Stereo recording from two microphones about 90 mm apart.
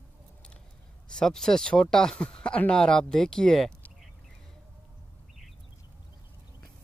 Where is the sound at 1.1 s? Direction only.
5° left (ahead or behind).